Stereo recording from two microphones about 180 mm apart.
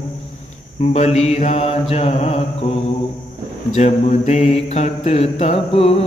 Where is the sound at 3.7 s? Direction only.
40° left (ahead or behind).